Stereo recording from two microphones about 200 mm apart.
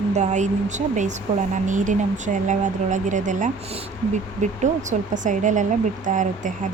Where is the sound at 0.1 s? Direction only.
35° right (ahead or behind).